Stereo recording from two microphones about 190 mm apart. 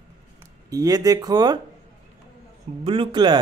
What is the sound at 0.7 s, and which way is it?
Speech, 20° right (ahead or behind).